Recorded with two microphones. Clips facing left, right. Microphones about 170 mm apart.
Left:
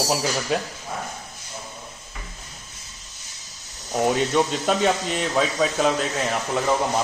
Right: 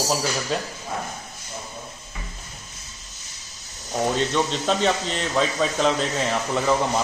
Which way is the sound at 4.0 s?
10° left (ahead or behind).